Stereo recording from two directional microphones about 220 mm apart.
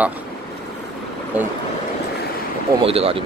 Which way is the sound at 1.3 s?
5° right (ahead or behind).